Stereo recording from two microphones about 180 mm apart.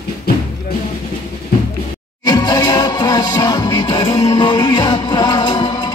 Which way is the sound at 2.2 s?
20° left (ahead or behind).